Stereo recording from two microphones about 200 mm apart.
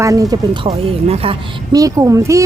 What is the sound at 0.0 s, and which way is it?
A woman's voice, 15° right (ahead or behind).